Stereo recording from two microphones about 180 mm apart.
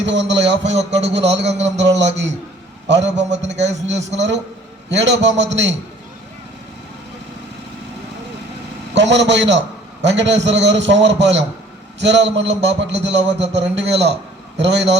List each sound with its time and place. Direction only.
0.0 s a man's voice: 80° right
0.8 s a man's voice: 35° right (ahead or behind)
1.0 s a man's voice: 75° right (ahead or behind)
3.2 s a man's voice: 40° right (ahead or behind)
4.1 s a man's voice: 80° right
9.0 s a man's voice: 80° right